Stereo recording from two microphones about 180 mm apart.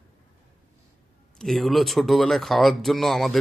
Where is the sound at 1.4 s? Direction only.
Centre (ahead or behind).